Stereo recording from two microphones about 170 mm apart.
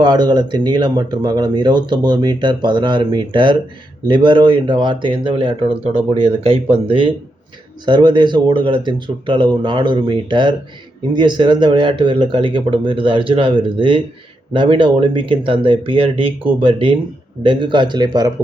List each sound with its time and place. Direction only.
0.0 s speech: 25° right (ahead or behind)